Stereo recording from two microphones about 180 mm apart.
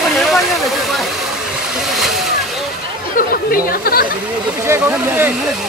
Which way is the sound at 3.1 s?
55° left (ahead or behind).